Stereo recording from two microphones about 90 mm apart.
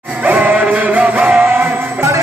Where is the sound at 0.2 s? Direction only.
20° right (ahead or behind).